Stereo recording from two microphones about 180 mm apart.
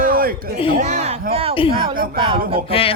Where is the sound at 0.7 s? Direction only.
40° right (ahead or behind).